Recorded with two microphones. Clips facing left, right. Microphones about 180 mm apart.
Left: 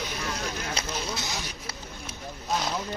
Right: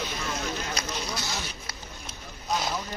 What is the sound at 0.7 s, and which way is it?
Speech, 20° left (ahead or behind).